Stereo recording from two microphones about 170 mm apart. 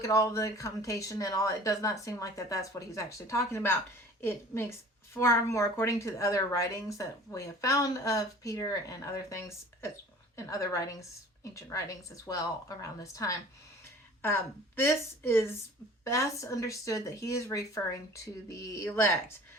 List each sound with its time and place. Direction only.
0.0 s a woman's voice: 20° left (ahead or behind)